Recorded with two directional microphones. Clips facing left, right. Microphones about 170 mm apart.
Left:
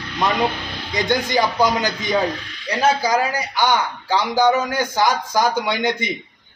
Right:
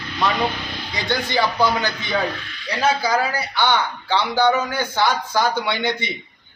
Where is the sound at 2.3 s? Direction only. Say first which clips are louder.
Left 3 dB; 40° left (ahead or behind).